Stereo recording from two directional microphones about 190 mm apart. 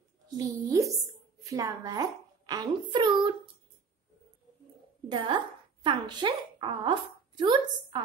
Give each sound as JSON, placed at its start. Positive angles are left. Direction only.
{"t": 0.4, "sound": "a woman's voice", "side_deg": -15}
{"t": 5.1, "sound": "a woman's voice", "side_deg": -25}